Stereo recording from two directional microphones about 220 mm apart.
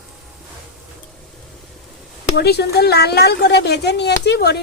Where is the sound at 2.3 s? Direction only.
45° left (ahead or behind).